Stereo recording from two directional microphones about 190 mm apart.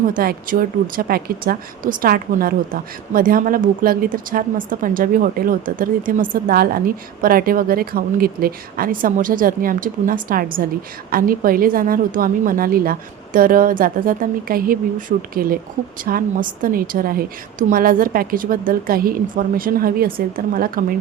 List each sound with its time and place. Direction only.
0.1 s speech: 50° right (ahead or behind)